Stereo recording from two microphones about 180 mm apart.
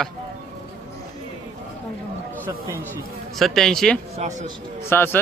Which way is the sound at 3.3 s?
Centre (ahead or behind).